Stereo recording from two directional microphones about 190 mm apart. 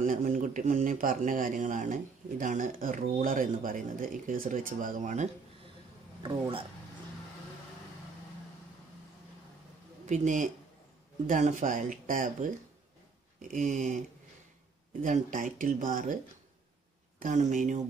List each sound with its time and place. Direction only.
0.0 s speech: 45° right (ahead or behind)
6.2 s speech: 25° right (ahead or behind)
10.0 s speech: 40° right (ahead or behind)
17.2 s speech: 40° right (ahead or behind)